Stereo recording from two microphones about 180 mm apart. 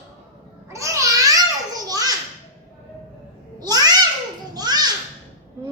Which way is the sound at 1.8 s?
20° right (ahead or behind).